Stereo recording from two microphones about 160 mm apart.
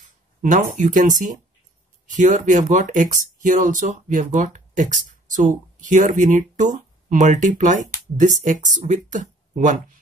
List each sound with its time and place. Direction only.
0.4 s speech: 50° right (ahead or behind)